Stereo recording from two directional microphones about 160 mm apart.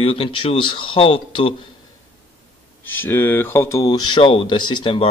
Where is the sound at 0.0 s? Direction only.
35° left (ahead or behind).